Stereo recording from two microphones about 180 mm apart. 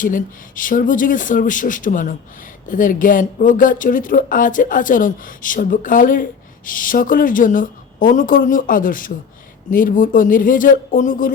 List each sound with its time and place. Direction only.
0.0 s speech: 50° left (ahead or behind)